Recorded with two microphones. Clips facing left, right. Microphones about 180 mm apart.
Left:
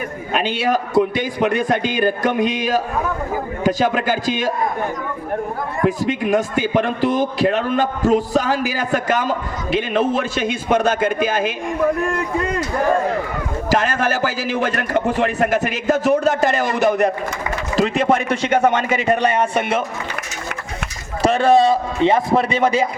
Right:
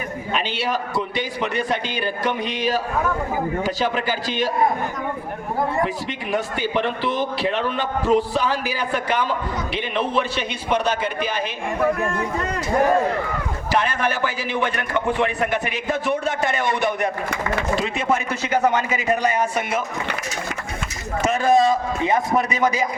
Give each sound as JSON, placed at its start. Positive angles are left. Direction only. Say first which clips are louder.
{"t": 0.3, "sound": "a man's voice", "louder": "left 6 dB", "side_deg": 50}
{"t": 5.8, "sound": "a man's voice", "louder": "left 7 dB", "side_deg": 45}
{"t": 13.7, "sound": "a man's voice", "louder": "left 3 dB", "side_deg": 45}
{"t": 21.2, "sound": "a man's voice", "louder": "left 4 dB", "side_deg": 30}